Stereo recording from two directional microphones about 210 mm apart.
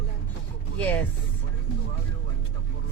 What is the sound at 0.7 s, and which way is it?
Speech, 5° left (ahead or behind).